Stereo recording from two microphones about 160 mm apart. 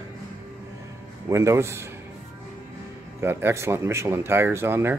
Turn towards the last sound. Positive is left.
turn(degrees=-15)  # may be behind; listen again after turning